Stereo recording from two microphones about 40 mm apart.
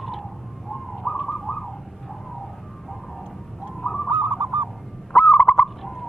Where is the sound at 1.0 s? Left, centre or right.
Centre.